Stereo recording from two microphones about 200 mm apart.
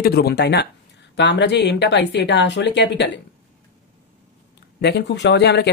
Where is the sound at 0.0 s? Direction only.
55° left (ahead or behind).